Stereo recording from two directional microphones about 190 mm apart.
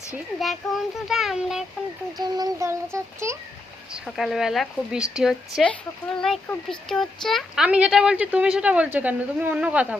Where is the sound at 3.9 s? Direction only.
Centre (ahead or behind).